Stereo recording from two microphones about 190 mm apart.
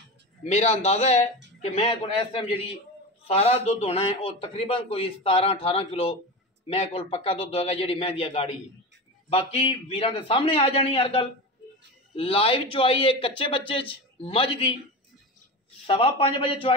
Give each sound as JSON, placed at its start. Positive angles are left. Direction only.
{"t": 0.4, "sound": "a man's voice", "side_deg": 35}
{"t": 15.9, "sound": "a man's voice", "side_deg": 30}